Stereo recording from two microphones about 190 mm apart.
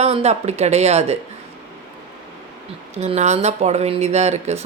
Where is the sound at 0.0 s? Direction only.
35° right (ahead or behind).